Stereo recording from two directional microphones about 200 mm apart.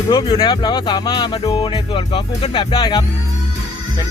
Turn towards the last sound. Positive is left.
turn(degrees=20)  # may be behind; listen again after turning